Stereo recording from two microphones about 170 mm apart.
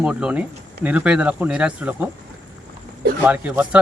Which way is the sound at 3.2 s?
10° right (ahead or behind).